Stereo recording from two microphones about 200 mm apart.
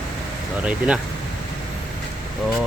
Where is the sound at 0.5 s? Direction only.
5° right (ahead or behind).